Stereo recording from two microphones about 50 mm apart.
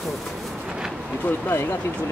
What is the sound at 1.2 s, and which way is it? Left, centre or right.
Speech, left.